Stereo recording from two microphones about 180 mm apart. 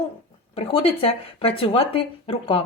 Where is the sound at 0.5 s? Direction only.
30° left (ahead or behind).